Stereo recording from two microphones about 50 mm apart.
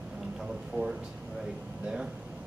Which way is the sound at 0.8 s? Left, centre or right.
Right.